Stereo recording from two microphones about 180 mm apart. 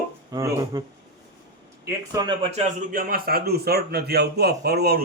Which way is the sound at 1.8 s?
20° right (ahead or behind).